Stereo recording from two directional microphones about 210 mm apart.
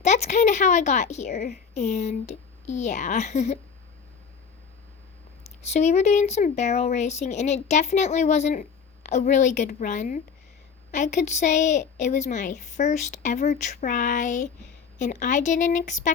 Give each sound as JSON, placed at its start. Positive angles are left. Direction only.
{"t": 0.0, "sound": "a woman's voice", "side_deg": 35}
{"t": 5.7, "sound": "a woman's voice", "side_deg": 30}